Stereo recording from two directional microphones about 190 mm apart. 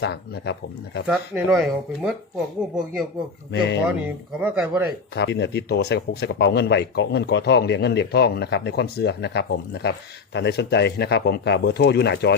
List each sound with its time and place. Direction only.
0.0 s speech: 65° left (ahead or behind)
1.0 s speech: 5° right (ahead or behind)
3.5 s speech: 65° left (ahead or behind)
3.8 s speech: 10° right (ahead or behind)
5.1 s speech: 65° left (ahead or behind)